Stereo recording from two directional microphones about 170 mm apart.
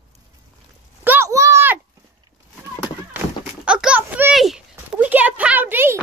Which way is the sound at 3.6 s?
5° right (ahead or behind).